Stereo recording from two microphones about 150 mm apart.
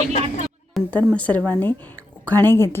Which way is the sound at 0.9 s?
10° left (ahead or behind).